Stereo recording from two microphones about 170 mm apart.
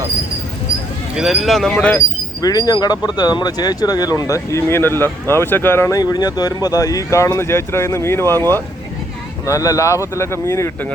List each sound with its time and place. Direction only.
1.1 s speech: 5° right (ahead or behind)
2.4 s speech: 20° left (ahead or behind)
9.5 s speech: 20° left (ahead or behind)